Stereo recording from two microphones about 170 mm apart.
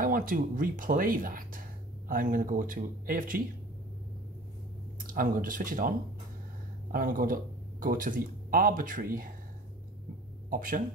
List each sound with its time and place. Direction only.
0.0 s speech: 55° right (ahead or behind)
5.0 s speech: 55° right (ahead or behind)
10.5 s speech: 55° right (ahead or behind)